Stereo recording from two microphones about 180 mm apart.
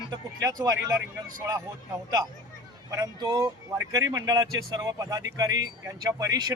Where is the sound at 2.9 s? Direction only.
20° right (ahead or behind).